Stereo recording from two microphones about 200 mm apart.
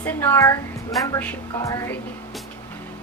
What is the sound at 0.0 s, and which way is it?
A woman's voice, 10° left (ahead or behind).